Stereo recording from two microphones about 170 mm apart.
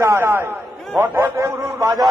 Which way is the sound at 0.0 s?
15° right (ahead or behind).